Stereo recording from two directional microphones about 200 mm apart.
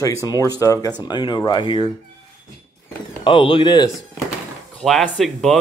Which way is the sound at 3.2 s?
25° left (ahead or behind).